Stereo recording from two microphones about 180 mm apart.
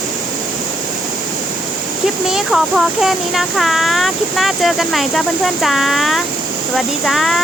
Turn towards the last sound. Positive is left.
turn(degrees=0)  # may be behind; listen again after turning